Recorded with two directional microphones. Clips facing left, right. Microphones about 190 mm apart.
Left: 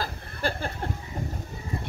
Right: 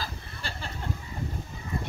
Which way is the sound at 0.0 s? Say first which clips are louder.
Left 8 dB; 55° left (ahead or behind).